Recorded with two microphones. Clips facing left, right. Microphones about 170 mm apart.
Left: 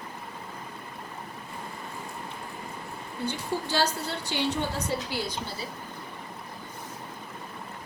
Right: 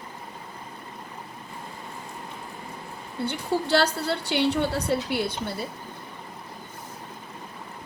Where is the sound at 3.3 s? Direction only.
65° right (ahead or behind).